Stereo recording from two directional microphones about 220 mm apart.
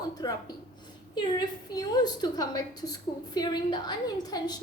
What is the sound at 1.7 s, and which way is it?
A woman's voice, 20° left (ahead or behind).